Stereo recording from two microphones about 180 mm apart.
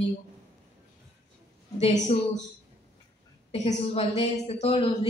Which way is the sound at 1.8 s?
35° left (ahead or behind).